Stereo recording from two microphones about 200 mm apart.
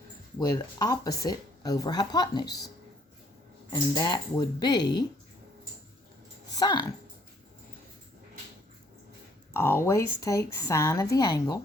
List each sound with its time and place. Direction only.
0.3 s speech: 20° left (ahead or behind)
3.7 s speech: 20° left (ahead or behind)
6.6 s speech: 20° left (ahead or behind)
9.5 s a woman's voice: 10° left (ahead or behind)